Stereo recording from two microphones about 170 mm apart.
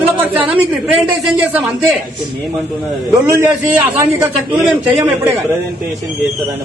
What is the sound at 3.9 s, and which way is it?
Speech, 15° right (ahead or behind).